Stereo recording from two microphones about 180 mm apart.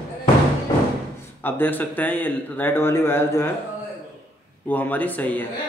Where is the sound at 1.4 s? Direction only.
10° left (ahead or behind).